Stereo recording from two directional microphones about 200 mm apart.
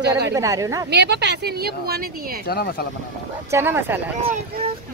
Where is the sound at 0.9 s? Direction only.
55° right (ahead or behind).